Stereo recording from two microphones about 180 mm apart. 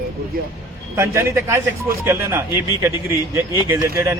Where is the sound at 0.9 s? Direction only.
15° right (ahead or behind).